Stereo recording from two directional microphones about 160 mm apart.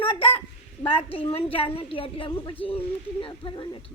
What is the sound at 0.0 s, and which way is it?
A child's voice, 35° left (ahead or behind).